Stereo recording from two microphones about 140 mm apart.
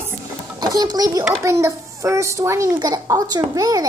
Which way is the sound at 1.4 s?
20° right (ahead or behind).